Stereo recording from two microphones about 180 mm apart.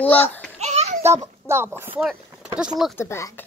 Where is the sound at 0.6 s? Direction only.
40° right (ahead or behind).